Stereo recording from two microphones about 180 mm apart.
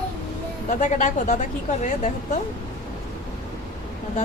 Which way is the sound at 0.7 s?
45° left (ahead or behind).